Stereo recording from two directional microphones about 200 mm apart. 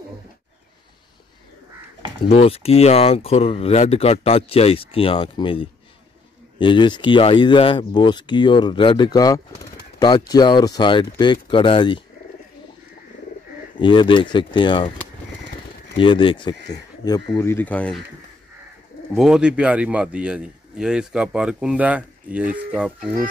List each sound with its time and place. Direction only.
2.2 s speech: 30° left (ahead or behind)
13.7 s speech: 25° left (ahead or behind)
16.0 s speech: 25° left (ahead or behind); by 18.0 s 5° left (ahead or behind)
19.1 s a man's voice: centre (ahead or behind)